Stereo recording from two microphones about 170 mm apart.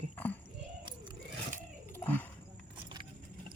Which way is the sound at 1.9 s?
10° left (ahead or behind).